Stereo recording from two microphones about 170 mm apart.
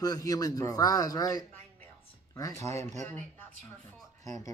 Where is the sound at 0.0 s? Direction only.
20° left (ahead or behind).